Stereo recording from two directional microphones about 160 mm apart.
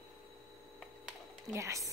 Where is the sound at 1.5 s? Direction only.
20° right (ahead or behind).